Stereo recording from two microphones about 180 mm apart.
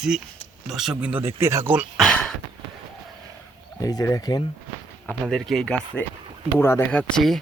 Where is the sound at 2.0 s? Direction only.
Centre (ahead or behind).